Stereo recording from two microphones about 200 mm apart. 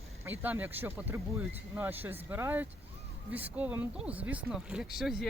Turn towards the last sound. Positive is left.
turn(degrees=0)  # may be behind; listen again after turning